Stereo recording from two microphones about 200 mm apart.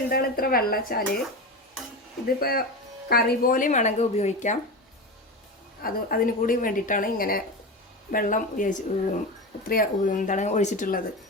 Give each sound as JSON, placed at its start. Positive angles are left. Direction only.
{"t": 0.1, "sound": "a woman's voice", "side_deg": 50}
{"t": 2.2, "sound": "a woman's voice", "side_deg": 50}
{"t": 5.8, "sound": "a woman's voice", "side_deg": 45}